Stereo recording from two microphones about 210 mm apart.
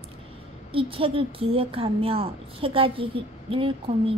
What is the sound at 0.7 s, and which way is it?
A woman's voice, 25° right (ahead or behind).